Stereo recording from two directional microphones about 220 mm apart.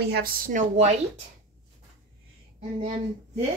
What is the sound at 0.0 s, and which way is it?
Speech, 45° right (ahead or behind).